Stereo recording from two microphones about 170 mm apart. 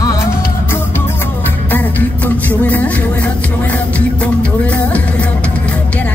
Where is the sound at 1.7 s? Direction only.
10° left (ahead or behind).